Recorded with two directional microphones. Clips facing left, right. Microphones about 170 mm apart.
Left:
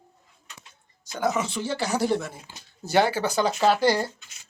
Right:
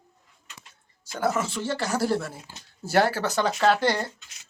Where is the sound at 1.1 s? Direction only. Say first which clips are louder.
Even; 5° right (ahead or behind).